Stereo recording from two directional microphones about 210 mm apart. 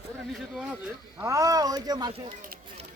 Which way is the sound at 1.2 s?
15° right (ahead or behind).